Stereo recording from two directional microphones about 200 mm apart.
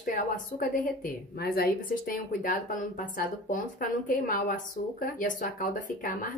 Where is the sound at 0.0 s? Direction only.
45° left (ahead or behind).